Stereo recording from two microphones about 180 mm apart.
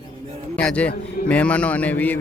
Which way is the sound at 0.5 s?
5° left (ahead or behind).